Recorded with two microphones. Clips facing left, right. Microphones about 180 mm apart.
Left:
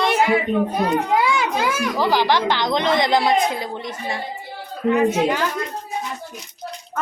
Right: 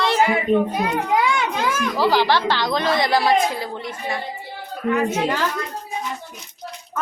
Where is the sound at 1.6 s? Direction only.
10° left (ahead or behind).